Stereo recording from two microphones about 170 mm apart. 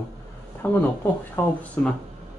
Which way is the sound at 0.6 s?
10° left (ahead or behind).